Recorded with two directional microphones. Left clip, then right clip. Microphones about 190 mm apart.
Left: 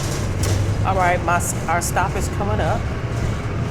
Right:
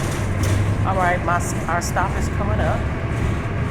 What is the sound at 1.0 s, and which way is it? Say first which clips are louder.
Speech: left 1 dB; 30° left (ahead or behind).